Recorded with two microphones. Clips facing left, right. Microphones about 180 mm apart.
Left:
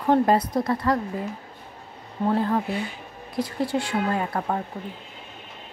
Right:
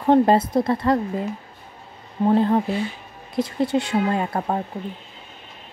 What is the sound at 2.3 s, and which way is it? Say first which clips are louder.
Speech: right 5 dB; 20° right (ahead or behind).